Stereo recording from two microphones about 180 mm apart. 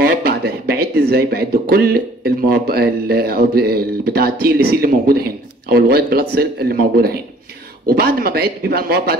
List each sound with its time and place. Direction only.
0.0 s a man's voice: 55° right (ahead or behind)